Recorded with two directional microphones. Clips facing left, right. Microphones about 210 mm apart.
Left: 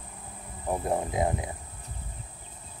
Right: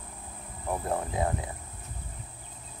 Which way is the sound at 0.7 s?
15° left (ahead or behind).